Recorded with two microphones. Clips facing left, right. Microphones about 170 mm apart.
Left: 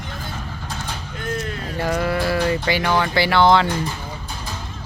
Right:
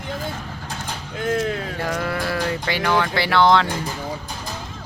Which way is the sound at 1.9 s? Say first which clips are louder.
Left 5 dB; 5° left (ahead or behind).